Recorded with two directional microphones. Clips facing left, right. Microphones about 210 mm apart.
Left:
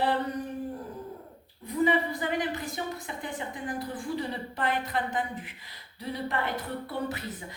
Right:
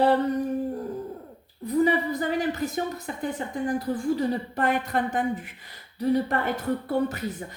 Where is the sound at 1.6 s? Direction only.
40° right (ahead or behind).